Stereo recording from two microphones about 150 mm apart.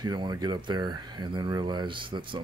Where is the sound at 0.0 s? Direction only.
30° right (ahead or behind).